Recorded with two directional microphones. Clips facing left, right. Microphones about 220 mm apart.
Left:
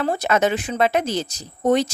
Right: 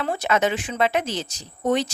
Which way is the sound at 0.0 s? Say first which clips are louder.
Left 3 dB; 40° left (ahead or behind).